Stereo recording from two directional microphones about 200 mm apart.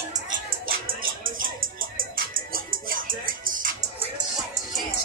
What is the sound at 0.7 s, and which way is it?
Music, 45° right (ahead or behind).